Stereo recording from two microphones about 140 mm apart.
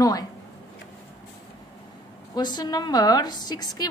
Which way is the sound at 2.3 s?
30° left (ahead or behind).